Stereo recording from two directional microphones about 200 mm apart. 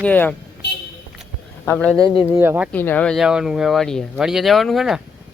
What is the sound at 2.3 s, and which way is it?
Speech, 10° right (ahead or behind).